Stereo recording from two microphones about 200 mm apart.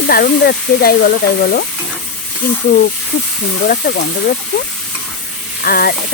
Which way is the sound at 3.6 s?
50° left (ahead or behind).